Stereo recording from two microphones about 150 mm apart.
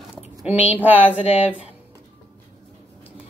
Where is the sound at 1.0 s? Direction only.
40° left (ahead or behind).